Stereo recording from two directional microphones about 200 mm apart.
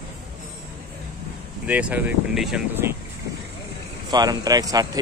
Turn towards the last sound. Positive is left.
turn(degrees=-20)  # may be behind; listen again after turning